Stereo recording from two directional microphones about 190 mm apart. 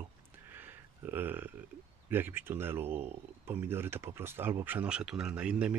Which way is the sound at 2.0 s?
10° right (ahead or behind).